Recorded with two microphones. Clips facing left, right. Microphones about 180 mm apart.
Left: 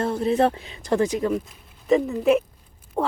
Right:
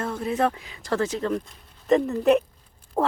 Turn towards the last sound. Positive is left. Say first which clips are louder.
# right 1 dB
turn(degrees=-5)  # may be behind; listen again after turning